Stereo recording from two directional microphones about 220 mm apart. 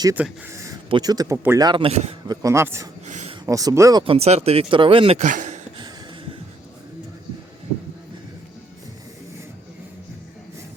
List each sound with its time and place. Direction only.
0.0 s speech: 10° right (ahead or behind)
3.1 s a sound: 30° right (ahead or behind)
3.4 s speech: 15° right (ahead or behind); by 5.5 s 35° right (ahead or behind)